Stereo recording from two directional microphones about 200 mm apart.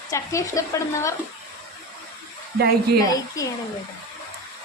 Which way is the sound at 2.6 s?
50° right (ahead or behind).